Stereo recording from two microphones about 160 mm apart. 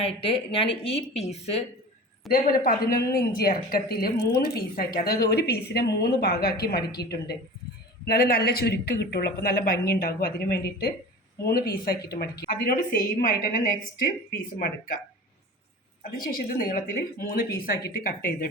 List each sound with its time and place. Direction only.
0.0 s speech: 35° left (ahead or behind)
2.3 s a woman's voice: centre (ahead or behind)
2.6 s a woman's voice: 75° left (ahead or behind); by 7.3 s 90° left
8.0 s speech: 75° left (ahead or behind)
11.4 s speech: 70° left (ahead or behind)
12.5 s a woman's voice: 65° left (ahead or behind)
16.2 s a woman's voice: 65° left (ahead or behind)